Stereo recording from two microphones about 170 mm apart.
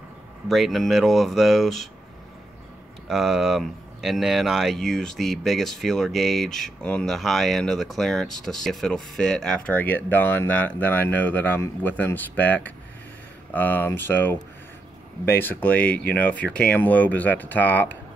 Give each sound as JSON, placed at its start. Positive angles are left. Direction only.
{"t": 0.5, "sound": "speech", "side_deg": 0}
{"t": 3.1, "sound": "speech", "side_deg": 0}